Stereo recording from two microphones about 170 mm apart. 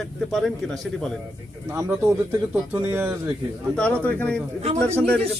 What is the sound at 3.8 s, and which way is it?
Speech, 5° left (ahead or behind).